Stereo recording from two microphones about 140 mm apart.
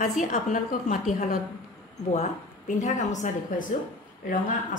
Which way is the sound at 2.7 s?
60° left (ahead or behind).